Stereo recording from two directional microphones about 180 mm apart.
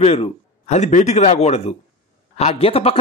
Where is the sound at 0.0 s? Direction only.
35° left (ahead or behind).